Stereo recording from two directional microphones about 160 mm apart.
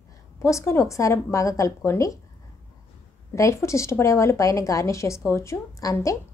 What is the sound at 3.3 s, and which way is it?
A woman's voice, 20° left (ahead or behind).